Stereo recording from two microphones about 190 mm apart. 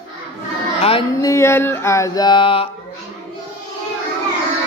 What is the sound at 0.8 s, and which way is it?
Speech, 30° left (ahead or behind).